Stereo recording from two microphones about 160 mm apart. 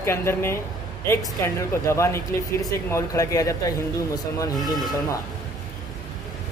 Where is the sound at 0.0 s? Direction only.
15° left (ahead or behind).